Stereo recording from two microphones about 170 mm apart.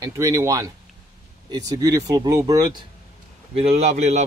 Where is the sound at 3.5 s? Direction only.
35° right (ahead or behind).